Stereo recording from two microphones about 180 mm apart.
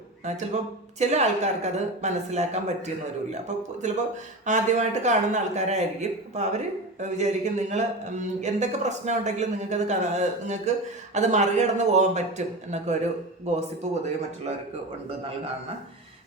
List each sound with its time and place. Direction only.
0.3 s speech: 40° right (ahead or behind)
13.5 s speech: 40° right (ahead or behind)